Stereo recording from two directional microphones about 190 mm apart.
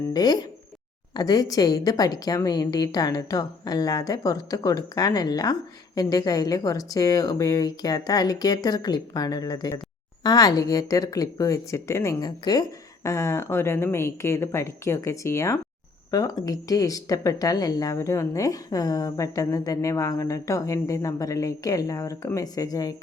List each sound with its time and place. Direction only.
0.1 s a woman's voice: 20° left (ahead or behind)